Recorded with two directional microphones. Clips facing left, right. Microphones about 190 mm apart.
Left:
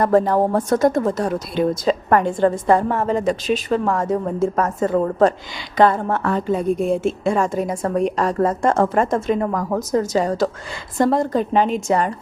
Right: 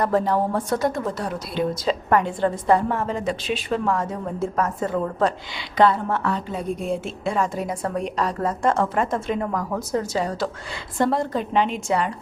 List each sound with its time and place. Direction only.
0.0 s a woman's voice: 45° left (ahead or behind)